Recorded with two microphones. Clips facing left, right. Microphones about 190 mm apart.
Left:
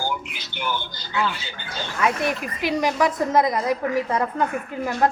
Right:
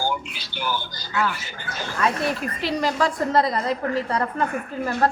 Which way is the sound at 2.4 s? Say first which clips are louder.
Left 1 dB; 15° left (ahead or behind).